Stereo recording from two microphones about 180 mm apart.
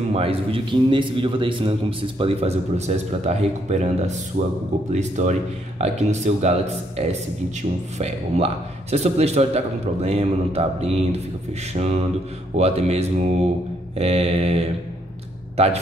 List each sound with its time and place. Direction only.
0.1 s a man's voice: 35° right (ahead or behind)
8.9 s a man's voice: 35° right (ahead or behind)